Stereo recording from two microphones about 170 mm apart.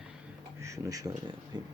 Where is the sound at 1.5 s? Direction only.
25° right (ahead or behind).